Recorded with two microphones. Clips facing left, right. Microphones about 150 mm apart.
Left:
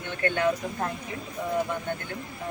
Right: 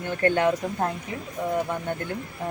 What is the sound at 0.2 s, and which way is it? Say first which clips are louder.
Speech: right 3 dB; 35° right (ahead or behind).